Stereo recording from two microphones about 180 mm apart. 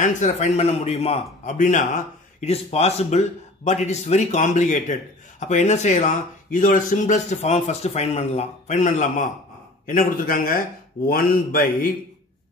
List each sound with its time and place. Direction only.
0.0 s speech: 40° left (ahead or behind)